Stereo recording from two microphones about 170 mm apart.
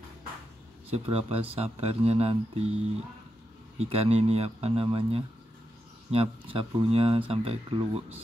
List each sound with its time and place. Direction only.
0.9 s speech: 35° right (ahead or behind)
3.8 s speech: 35° right (ahead or behind)